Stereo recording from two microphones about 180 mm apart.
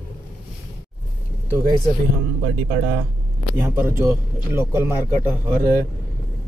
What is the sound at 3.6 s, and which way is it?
A man's voice, 15° right (ahead or behind).